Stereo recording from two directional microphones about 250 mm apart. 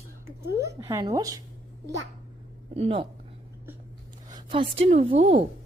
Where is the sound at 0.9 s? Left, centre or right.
Centre.